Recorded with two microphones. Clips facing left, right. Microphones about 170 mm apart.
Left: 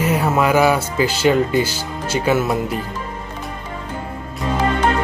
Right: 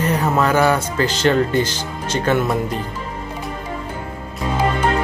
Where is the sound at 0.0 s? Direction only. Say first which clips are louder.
Left 1 dB; 10° left (ahead or behind).